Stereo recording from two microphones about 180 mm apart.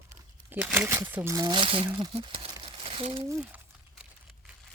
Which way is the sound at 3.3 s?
10° right (ahead or behind).